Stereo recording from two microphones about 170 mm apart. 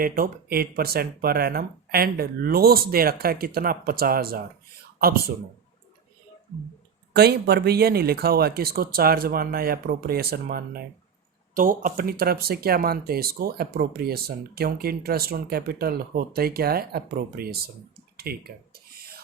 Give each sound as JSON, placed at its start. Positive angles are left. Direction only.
{"t": 0.0, "sound": "speech", "side_deg": -60}
{"t": 7.1, "sound": "speech", "side_deg": -70}
{"t": 18.2, "sound": "a sound", "side_deg": -65}